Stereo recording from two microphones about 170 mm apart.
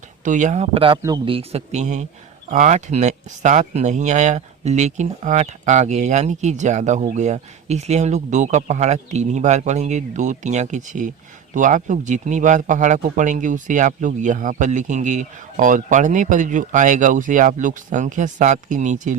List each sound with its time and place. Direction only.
0.3 s speech: 45° right (ahead or behind)